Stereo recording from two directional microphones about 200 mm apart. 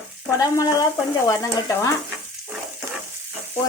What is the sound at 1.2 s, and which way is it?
Stir, 15° left (ahead or behind).